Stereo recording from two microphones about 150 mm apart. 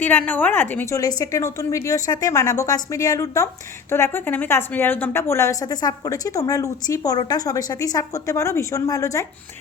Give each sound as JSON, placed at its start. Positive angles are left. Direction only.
{"t": 0.0, "sound": "a woman's voice", "side_deg": 10}